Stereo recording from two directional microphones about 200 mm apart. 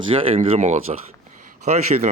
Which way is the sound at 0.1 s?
30° right (ahead or behind).